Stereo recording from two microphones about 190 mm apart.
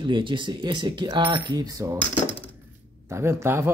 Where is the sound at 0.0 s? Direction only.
25° right (ahead or behind).